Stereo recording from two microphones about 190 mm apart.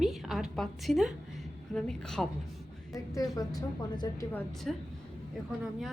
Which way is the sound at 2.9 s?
20° left (ahead or behind).